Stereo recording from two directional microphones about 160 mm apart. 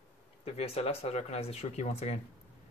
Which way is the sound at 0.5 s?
40° left (ahead or behind).